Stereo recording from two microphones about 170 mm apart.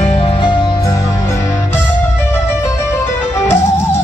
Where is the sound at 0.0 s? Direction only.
35° left (ahead or behind).